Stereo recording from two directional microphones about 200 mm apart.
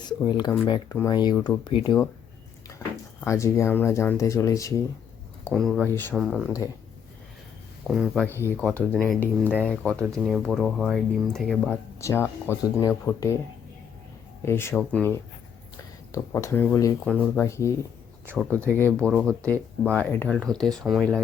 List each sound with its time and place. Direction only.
0.0 s speech: 20° left (ahead or behind)
3.2 s speech: 15° left (ahead or behind)
5.5 s speech: centre (ahead or behind)
5.9 s speech: 10° left (ahead or behind)
6.1 s speech: centre (ahead or behind)
7.9 s speech: centre (ahead or behind)
8.3 s speech: 10° left (ahead or behind)
9.9 s speech: 15° right (ahead or behind)
10.2 s speech: centre (ahead or behind)
11.7 s speech: 15° left (ahead or behind)
14.4 s speech: 15° left (ahead or behind)
18.8 s speech: 5° left (ahead or behind)